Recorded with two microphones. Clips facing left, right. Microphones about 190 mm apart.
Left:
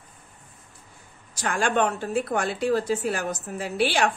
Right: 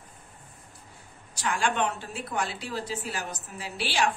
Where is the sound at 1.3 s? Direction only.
45° left (ahead or behind).